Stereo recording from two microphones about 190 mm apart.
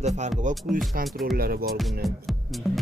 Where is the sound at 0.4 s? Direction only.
40° right (ahead or behind).